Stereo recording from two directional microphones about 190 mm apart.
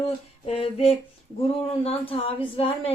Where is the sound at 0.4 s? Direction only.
30° left (ahead or behind).